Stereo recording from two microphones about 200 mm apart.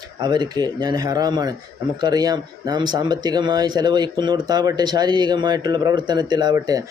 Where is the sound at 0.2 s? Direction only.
20° right (ahead or behind).